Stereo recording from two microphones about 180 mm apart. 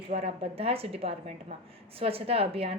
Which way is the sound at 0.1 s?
35° right (ahead or behind).